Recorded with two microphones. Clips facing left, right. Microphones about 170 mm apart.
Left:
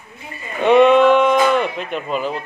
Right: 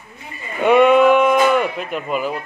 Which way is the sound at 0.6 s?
10° right (ahead or behind).